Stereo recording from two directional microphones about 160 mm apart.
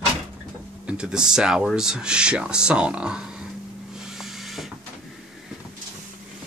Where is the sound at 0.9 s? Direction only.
5° right (ahead or behind).